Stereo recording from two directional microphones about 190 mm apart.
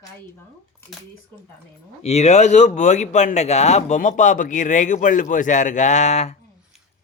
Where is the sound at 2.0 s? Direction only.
35° left (ahead or behind).